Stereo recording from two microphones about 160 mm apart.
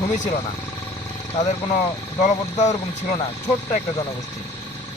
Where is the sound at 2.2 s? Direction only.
50° left (ahead or behind).